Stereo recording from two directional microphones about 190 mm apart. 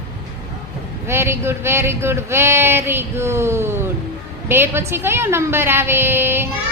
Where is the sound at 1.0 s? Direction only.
15° right (ahead or behind).